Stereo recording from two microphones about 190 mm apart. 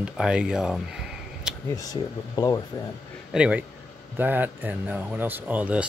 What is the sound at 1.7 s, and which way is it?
Speech, 20° left (ahead or behind).